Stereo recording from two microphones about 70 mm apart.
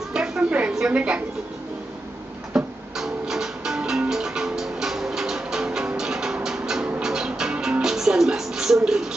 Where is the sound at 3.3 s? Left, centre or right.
Centre.